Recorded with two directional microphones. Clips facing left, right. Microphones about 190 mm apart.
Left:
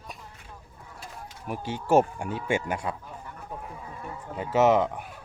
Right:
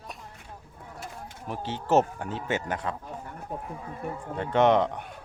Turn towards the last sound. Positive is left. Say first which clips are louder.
# even
turn(degrees=5)  # may be behind; listen again after turning